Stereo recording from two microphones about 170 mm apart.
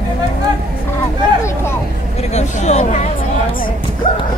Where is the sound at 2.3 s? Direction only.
45° left (ahead or behind).